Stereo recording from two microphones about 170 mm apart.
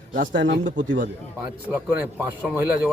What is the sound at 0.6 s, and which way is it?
Speech, 90° right.